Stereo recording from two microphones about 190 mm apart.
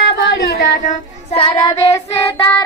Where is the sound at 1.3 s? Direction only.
30° left (ahead or behind).